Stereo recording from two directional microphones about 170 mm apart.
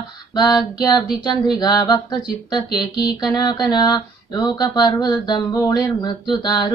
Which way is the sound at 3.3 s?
25° left (ahead or behind).